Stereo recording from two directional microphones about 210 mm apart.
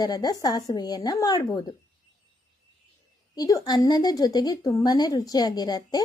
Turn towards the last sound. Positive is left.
turn(degrees=20)  # may be behind; listen again after turning